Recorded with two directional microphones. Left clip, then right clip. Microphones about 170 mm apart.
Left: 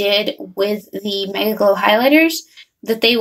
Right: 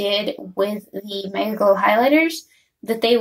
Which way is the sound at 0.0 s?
10° left (ahead or behind).